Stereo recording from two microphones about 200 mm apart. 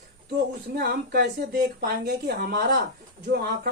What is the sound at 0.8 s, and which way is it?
Speech, 50° right (ahead or behind).